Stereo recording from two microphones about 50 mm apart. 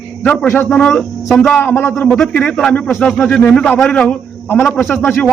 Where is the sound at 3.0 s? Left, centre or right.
Centre.